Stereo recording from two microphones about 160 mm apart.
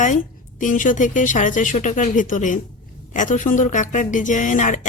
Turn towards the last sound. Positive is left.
turn(degrees=50)  # may be behind; listen again after turning